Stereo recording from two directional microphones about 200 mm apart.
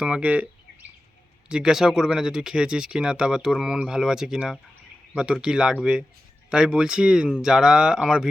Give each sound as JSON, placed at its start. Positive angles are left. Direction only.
{"t": 0.0, "sound": "speech", "side_deg": -5}